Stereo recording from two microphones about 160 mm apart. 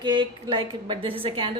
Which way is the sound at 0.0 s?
30° right (ahead or behind).